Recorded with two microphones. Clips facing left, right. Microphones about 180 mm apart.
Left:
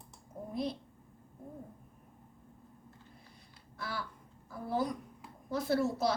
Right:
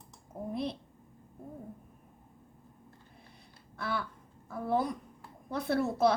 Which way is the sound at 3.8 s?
60° right (ahead or behind).